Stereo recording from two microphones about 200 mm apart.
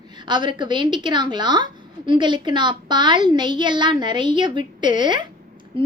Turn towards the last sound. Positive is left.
turn(degrees=-25)  # may be behind; listen again after turning